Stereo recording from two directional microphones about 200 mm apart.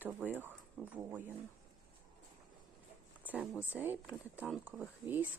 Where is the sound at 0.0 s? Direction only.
10° right (ahead or behind).